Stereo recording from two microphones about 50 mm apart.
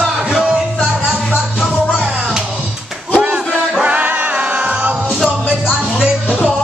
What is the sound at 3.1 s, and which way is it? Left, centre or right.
Music, right.